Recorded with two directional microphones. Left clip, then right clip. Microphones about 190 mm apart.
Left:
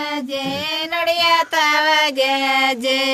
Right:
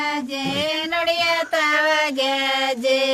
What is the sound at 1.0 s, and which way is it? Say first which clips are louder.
Child singing: left 6 dB; 65° left (ahead or behind).